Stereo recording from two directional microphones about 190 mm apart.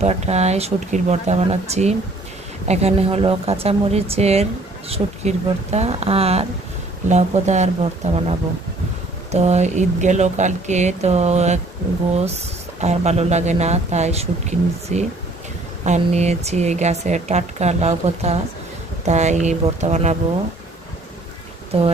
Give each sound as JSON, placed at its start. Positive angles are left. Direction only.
{"t": 0.0, "sound": "speech", "side_deg": -35}
{"t": 9.3, "sound": "speech", "side_deg": -35}
{"t": 12.8, "sound": "speech", "side_deg": -35}